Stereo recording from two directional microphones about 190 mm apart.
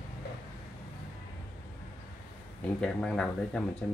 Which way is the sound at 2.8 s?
5° left (ahead or behind).